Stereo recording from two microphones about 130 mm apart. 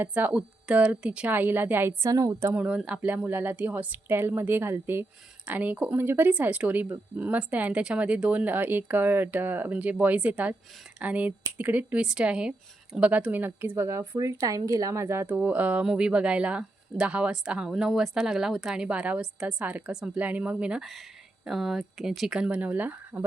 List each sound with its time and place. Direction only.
0.0 s speech: 15° right (ahead or behind)
2.6 s speech: 10° right (ahead or behind)